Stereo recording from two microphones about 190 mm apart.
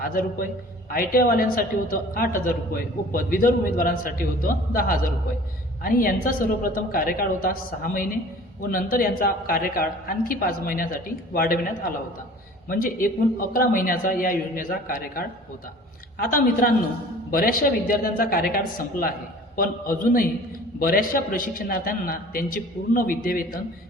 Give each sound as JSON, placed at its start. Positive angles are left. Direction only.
{"t": 0.0, "sound": "a woman's voice", "side_deg": 50}